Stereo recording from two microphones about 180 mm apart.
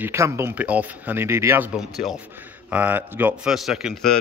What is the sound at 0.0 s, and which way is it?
Speech, 15° right (ahead or behind).